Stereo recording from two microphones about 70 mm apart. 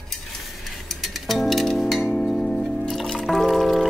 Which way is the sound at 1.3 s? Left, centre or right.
Centre.